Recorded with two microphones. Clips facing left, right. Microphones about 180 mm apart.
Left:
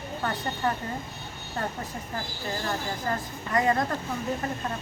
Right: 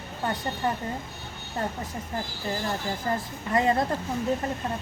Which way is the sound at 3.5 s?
25° right (ahead or behind).